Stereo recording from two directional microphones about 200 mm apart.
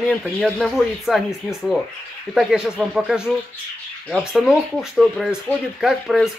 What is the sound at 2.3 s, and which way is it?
Speech, centre (ahead or behind).